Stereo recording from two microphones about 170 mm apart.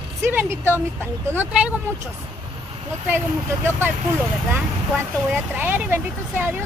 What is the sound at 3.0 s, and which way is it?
Speech, 15° right (ahead or behind).